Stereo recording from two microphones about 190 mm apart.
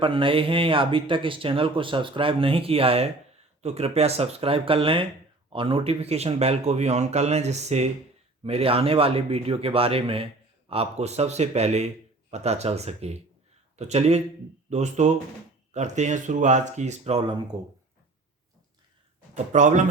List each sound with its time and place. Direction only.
0.0 s speech: 25° right (ahead or behind)
17.5 s speech: 15° right (ahead or behind)
19.3 s speech: 40° right (ahead or behind)